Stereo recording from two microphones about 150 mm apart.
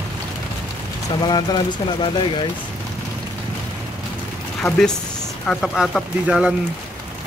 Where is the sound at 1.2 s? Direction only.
30° left (ahead or behind).